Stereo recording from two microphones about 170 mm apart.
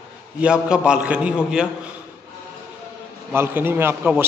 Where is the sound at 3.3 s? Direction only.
15° right (ahead or behind).